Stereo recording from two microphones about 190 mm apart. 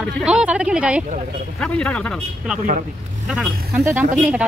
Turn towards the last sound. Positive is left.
turn(degrees=-5)  # may be behind; listen again after turning